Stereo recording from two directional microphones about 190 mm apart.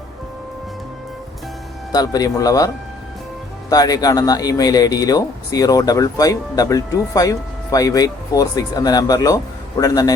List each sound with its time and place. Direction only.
1.9 s speech: 20° left (ahead or behind)
3.7 s speech: 20° left (ahead or behind)